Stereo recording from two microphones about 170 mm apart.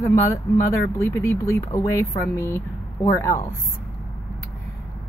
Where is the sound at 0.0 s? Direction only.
15° left (ahead or behind).